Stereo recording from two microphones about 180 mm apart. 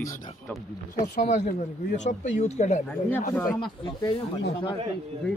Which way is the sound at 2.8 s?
10° left (ahead or behind).